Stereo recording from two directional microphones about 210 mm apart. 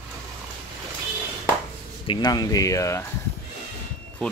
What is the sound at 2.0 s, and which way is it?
Speech, 20° left (ahead or behind).